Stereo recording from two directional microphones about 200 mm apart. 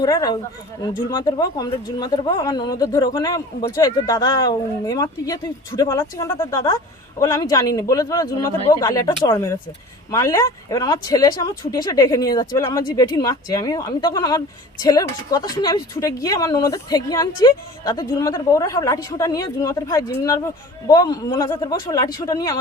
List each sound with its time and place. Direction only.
0.0 s speech: 20° left (ahead or behind)